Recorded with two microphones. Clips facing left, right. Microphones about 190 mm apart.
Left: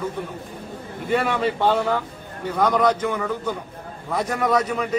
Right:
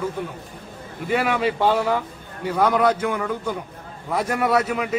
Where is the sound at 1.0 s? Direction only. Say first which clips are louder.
Even; 5° right (ahead or behind).